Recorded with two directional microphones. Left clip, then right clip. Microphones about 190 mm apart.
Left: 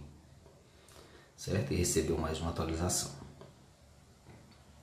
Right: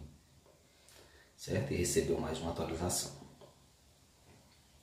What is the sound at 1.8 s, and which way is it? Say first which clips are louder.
Speech: even; 20° left (ahead or behind).